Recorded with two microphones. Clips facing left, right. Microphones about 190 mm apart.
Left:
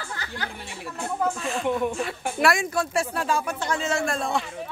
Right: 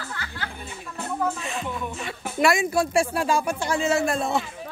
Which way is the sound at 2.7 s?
10° right (ahead or behind).